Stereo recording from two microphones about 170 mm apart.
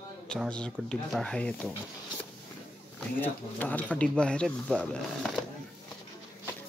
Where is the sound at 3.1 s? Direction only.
10° left (ahead or behind).